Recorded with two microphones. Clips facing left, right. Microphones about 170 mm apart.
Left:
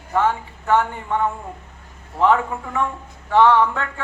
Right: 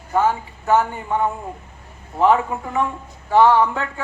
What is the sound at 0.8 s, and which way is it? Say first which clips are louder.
A man's voice: right 1 dB; 10° right (ahead or behind).